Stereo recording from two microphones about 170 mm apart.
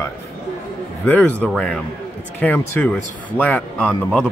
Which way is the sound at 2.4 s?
10° left (ahead or behind).